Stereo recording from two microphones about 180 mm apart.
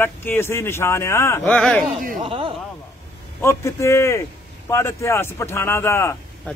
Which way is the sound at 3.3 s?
15° left (ahead or behind).